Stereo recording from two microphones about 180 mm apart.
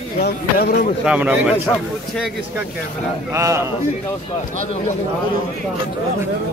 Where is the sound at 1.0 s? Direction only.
5° right (ahead or behind).